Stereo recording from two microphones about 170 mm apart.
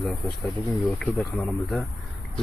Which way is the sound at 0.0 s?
5° left (ahead or behind).